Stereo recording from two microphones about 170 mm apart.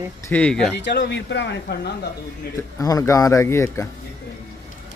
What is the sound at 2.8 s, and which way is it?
A man's voice, 20° left (ahead or behind).